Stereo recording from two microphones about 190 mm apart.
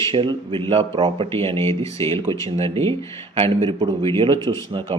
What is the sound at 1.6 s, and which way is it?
Speech, 15° left (ahead or behind).